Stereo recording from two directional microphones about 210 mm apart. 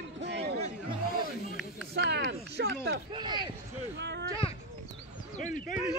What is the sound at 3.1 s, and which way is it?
Speech, 20° right (ahead or behind).